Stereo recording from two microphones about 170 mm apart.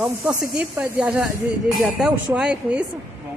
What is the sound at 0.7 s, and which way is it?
Speech, 5° right (ahead or behind).